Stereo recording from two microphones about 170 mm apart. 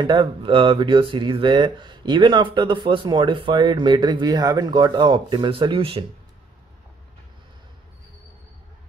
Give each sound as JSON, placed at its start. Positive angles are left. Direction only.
{"t": 0.0, "sound": "speech", "side_deg": -30}